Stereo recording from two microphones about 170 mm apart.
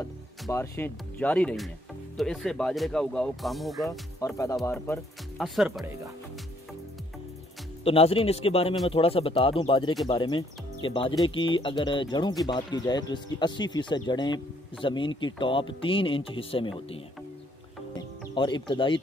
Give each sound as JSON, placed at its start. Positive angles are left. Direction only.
{"t": 0.0, "sound": "speech", "side_deg": 15}
{"t": 4.2, "sound": "speech", "side_deg": 20}
{"t": 5.4, "sound": "speech", "side_deg": 0}
{"t": 7.8, "sound": "speech", "side_deg": 35}
{"t": 17.9, "sound": "music", "side_deg": 25}